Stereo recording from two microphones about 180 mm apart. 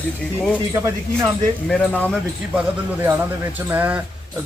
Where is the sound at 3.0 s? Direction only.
10° right (ahead or behind).